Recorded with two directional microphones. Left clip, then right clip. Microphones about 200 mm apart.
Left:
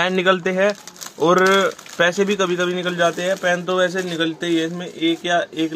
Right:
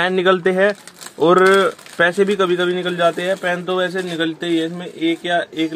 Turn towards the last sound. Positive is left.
turn(degrees=-5)  # may be behind; listen again after turning